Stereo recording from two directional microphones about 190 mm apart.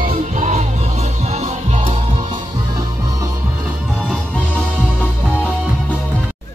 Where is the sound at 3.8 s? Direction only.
Centre (ahead or behind).